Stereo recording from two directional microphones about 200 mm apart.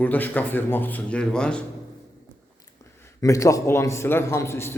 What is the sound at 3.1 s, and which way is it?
Speech, 15° left (ahead or behind).